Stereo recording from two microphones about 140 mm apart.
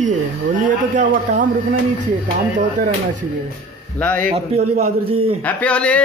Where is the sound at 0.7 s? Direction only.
65° right (ahead or behind).